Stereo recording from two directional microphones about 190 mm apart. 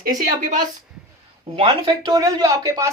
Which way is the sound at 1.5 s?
25° right (ahead or behind).